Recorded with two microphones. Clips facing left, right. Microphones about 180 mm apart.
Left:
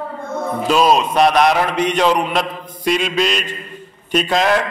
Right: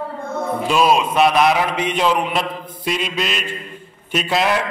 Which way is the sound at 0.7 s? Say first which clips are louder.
Left 1 dB; 5° right (ahead or behind).